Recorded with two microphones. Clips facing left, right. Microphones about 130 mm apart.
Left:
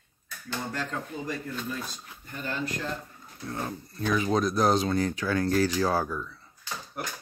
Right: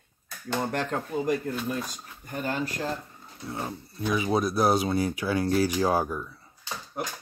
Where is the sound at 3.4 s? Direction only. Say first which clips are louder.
Even; 10° right (ahead or behind).